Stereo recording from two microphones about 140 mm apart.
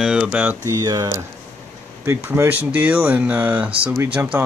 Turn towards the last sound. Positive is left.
turn(degrees=-10)  # may be behind; listen again after turning